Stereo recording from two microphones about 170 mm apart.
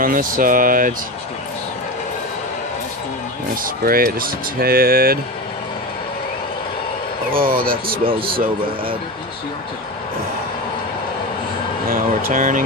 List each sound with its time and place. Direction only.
0.0 s speech: 55° right (ahead or behind)
3.6 s speech: 60° right (ahead or behind)
7.5 s speech: 30° right (ahead or behind)
11.9 s speech: 55° right (ahead or behind)